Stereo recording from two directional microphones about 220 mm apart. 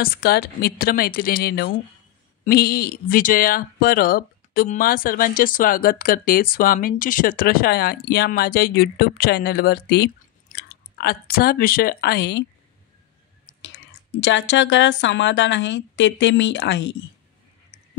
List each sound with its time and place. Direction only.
0.0 s speech: 45° left (ahead or behind)
14.2 s a woman's voice: 55° left (ahead or behind)